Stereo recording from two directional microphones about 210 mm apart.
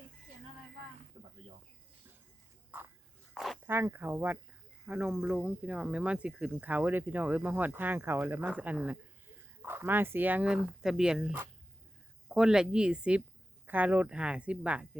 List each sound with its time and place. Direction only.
1.2 s snake: 25° right (ahead or behind)
3.3 s dog: centre (ahead or behind)
3.7 s speech: 10° right (ahead or behind)